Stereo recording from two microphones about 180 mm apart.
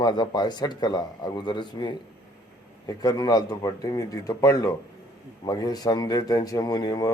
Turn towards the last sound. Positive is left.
turn(degrees=20)  # may be behind; listen again after turning